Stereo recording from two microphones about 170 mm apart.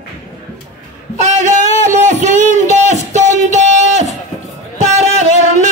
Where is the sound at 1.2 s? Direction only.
45° right (ahead or behind).